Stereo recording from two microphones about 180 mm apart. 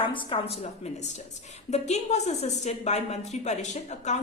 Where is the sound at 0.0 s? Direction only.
30° left (ahead or behind).